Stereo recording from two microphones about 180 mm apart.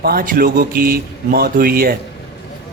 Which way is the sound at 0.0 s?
55° right (ahead or behind).